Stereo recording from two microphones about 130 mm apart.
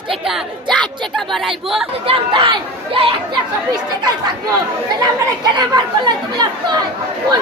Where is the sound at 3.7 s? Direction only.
30° right (ahead or behind).